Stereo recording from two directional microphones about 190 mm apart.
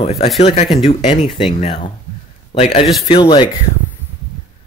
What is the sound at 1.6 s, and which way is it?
A man's voice, 25° left (ahead or behind).